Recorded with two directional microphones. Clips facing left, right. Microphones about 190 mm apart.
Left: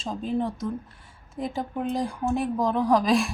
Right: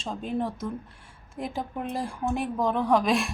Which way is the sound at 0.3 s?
Centre (ahead or behind).